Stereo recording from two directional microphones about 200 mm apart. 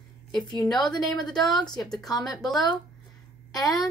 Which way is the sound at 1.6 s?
20° left (ahead or behind).